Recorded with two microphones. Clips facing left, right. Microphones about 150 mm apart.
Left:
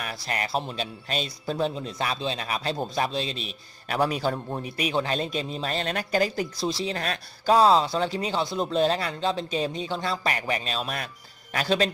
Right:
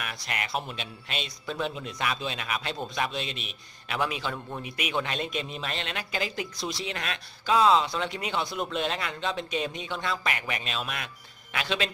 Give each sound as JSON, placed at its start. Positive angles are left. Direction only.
{"t": 0.0, "sound": "speech", "side_deg": 35}